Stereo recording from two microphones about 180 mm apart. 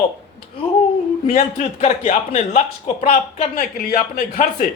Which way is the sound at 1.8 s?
40° left (ahead or behind).